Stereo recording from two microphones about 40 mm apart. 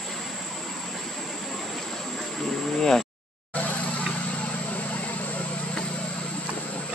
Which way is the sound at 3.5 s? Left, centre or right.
Left.